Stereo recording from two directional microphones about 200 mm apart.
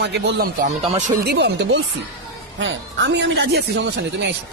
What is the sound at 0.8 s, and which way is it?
Speech, 35° right (ahead or behind).